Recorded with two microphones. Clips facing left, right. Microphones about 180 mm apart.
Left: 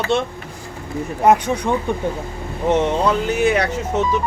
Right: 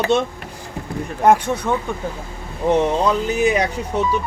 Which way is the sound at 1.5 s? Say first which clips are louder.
Left 1 dB; 10° left (ahead or behind).